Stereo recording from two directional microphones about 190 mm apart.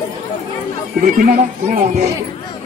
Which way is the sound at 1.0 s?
50° right (ahead or behind).